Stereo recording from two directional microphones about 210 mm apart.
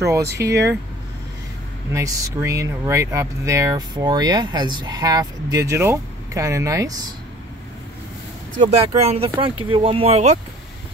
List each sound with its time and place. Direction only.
0.0 s speech: 15° right (ahead or behind)
1.9 s speech: 15° right (ahead or behind)
8.5 s speech: 30° right (ahead or behind)